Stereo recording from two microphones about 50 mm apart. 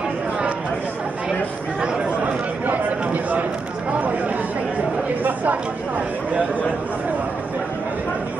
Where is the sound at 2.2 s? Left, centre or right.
Right.